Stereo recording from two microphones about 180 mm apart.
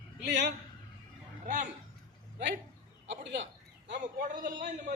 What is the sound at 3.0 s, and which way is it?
Speech, 85° right.